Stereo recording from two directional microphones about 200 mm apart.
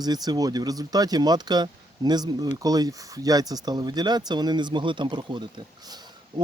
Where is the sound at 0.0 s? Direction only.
20° right (ahead or behind).